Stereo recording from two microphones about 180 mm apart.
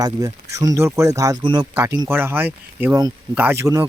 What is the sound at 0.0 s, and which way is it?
Speech, 20° right (ahead or behind).